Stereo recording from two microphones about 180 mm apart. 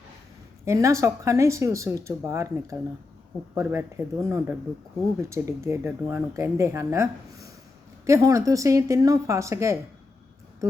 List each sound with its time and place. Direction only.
0.6 s speech: 15° right (ahead or behind)